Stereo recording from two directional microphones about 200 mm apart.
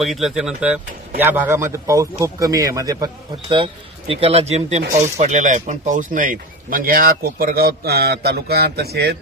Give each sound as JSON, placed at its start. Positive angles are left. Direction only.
{"t": 0.0, "sound": "a man's voice", "side_deg": 0}
{"t": 4.1, "sound": "speech", "side_deg": -30}